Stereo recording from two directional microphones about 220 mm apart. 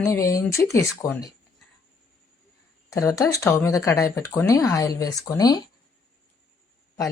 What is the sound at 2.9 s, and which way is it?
Speech, 15° left (ahead or behind).